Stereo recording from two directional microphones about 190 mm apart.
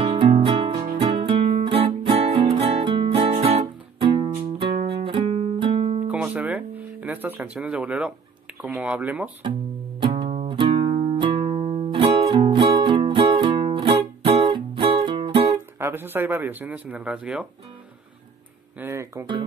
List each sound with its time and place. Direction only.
0.0 s music: 30° right (ahead or behind)
4.7 s music: 30° right (ahead or behind)
6.0 s guitar: 10° right (ahead or behind)
8.5 s speech: 5° right (ahead or behind)
9.9 s music: 25° right (ahead or behind)
15.5 s speech: 10° right (ahead or behind)
18.8 s speech: 15° right (ahead or behind)